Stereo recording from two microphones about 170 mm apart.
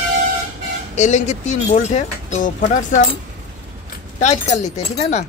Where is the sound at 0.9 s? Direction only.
45° left (ahead or behind).